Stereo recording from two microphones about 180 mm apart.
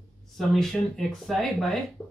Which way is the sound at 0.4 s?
Centre (ahead or behind).